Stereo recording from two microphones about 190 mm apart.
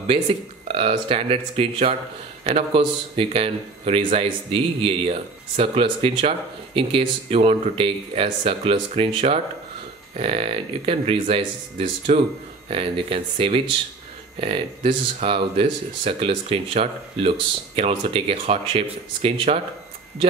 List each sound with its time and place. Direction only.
0.7 s speech: 30° right (ahead or behind)